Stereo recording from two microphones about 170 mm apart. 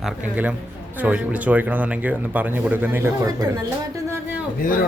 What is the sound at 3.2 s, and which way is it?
Speech, 20° right (ahead or behind).